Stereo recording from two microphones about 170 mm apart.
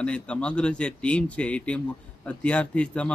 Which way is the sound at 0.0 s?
5° left (ahead or behind).